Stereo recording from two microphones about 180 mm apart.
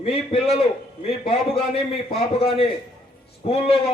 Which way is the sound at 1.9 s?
35° left (ahead or behind).